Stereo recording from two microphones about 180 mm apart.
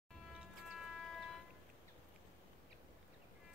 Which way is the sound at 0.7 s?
Centre (ahead or behind).